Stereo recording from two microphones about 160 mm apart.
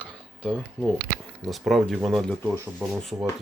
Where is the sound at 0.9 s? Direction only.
90° right.